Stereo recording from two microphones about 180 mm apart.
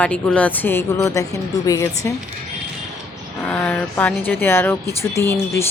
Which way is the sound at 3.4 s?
10° left (ahead or behind).